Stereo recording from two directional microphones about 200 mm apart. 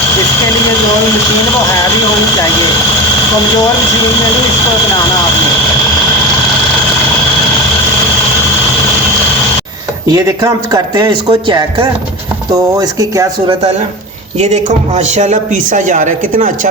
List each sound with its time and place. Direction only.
10.1 s speech: 15° right (ahead or behind)
14.3 s a man's voice: 35° right (ahead or behind)